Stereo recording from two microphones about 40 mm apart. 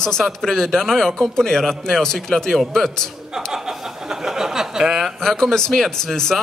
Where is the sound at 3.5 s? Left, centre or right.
Centre.